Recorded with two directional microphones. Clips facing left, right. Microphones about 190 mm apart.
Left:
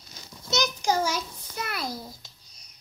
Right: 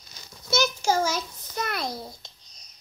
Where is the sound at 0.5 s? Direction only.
15° left (ahead or behind).